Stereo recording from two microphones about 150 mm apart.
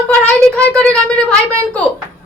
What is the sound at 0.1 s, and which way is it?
Speech, 10° left (ahead or behind).